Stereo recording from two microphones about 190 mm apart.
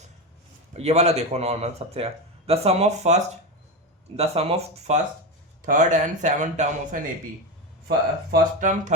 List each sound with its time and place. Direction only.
0.8 s speech: 35° right (ahead or behind)
4.2 s speech: 35° right (ahead or behind)
7.9 s speech: 55° right (ahead or behind)